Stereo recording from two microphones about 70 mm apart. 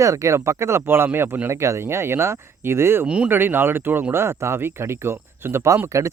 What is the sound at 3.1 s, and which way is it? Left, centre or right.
Speech, centre.